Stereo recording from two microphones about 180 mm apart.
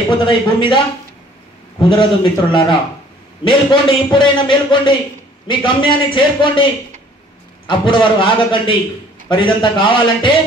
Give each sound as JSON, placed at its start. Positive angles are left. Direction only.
{"t": 0.2, "sound": "a man's voice", "side_deg": 25}
{"t": 1.8, "sound": "a man's voice", "side_deg": 25}
{"t": 7.6, "sound": "a man's voice", "side_deg": 25}